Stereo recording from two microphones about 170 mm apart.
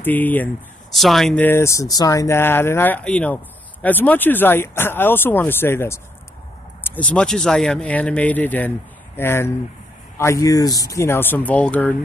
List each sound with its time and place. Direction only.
0.0 s speech: 10° left (ahead or behind)